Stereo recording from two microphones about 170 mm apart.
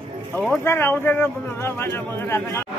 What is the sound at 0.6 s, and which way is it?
Speech, 15° left (ahead or behind).